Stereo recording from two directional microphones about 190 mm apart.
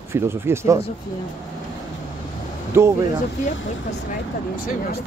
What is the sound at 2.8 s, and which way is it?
Speech, 15° right (ahead or behind).